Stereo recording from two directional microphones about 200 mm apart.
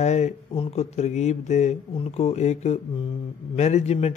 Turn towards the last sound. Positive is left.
turn(degrees=35)  # may be behind; listen again after turning